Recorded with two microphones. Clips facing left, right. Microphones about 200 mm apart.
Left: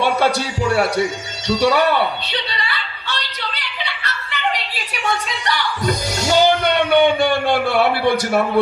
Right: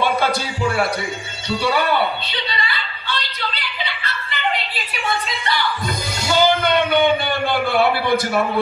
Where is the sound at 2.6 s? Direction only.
70° left (ahead or behind).